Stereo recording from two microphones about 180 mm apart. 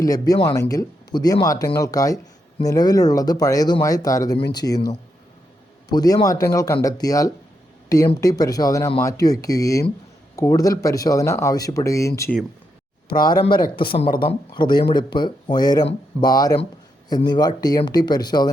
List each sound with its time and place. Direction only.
0.0 s speech: 20° left (ahead or behind)
5.9 s speech: 20° left (ahead or behind)